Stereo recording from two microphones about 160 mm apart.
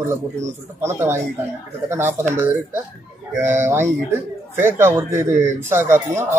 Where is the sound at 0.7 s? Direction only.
15° right (ahead or behind).